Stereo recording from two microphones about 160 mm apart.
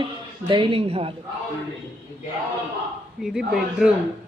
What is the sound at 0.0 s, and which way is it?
Speech, 30° right (ahead or behind).